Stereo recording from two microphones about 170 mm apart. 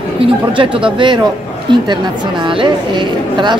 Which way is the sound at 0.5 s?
30° right (ahead or behind).